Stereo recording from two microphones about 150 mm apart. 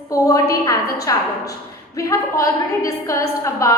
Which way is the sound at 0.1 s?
25° left (ahead or behind).